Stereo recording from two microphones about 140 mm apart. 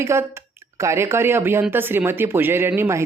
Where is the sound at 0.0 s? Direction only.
20° right (ahead or behind).